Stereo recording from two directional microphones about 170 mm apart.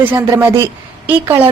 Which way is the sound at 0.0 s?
10° right (ahead or behind).